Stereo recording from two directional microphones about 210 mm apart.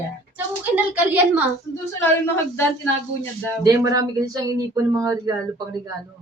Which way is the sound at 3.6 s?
15° right (ahead or behind).